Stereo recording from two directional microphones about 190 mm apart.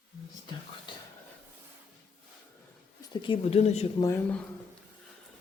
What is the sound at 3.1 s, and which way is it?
Speech, 25° left (ahead or behind).